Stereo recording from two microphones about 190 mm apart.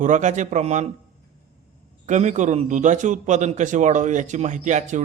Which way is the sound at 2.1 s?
40° right (ahead or behind).